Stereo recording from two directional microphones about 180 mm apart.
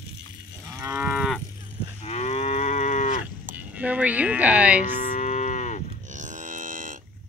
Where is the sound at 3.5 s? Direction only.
10° right (ahead or behind).